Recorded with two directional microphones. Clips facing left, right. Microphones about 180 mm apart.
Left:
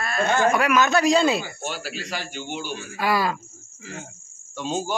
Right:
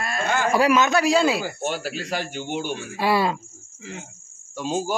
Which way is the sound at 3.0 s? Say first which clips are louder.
Right 2 dB; 30° right (ahead or behind).